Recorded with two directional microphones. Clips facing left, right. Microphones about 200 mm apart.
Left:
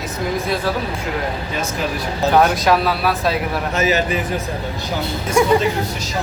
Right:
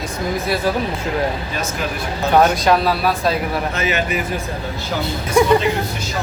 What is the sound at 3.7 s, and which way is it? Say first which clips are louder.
Speech: left 3 dB; 40° left (ahead or behind).